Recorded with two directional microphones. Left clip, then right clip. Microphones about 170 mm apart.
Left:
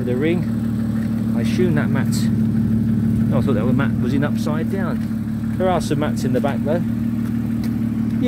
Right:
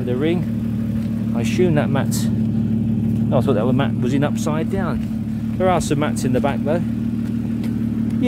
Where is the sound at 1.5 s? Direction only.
15° right (ahead or behind).